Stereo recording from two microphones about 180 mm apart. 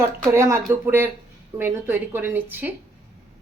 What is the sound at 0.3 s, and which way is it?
Speech, 15° right (ahead or behind).